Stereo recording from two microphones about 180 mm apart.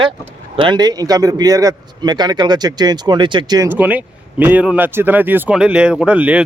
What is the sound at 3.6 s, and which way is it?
Speech, 10° right (ahead or behind).